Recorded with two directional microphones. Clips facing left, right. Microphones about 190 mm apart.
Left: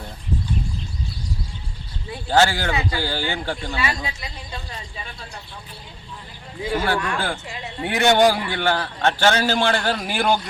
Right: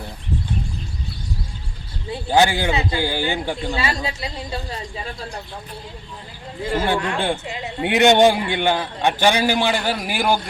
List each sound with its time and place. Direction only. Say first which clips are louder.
2.2 s a man's voice: right 1 dB; 15° right (ahead or behind)
3.8 s speech: right 3 dB; 30° right (ahead or behind)
6.6 s a man's voice: right 1 dB; centre (ahead or behind)
6.8 s a man's voice: right 3 dB; 20° right (ahead or behind)